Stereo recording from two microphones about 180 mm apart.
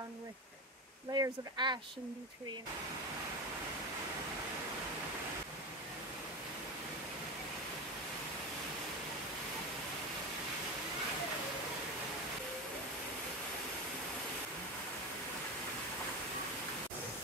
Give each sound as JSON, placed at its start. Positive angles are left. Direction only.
{"t": 1.1, "sound": "speech", "side_deg": -25}